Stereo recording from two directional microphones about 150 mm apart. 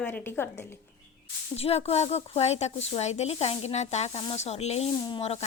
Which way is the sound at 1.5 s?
40° left (ahead or behind).